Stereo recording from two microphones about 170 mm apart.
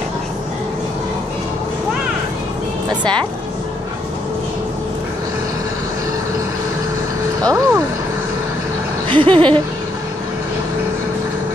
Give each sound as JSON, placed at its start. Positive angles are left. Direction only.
{"t": 3.0, "sound": "speech", "side_deg": -25}
{"t": 7.4, "sound": "speech", "side_deg": -15}
{"t": 9.1, "sound": "speech", "side_deg": -30}